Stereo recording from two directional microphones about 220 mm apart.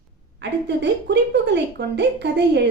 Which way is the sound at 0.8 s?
50° right (ahead or behind).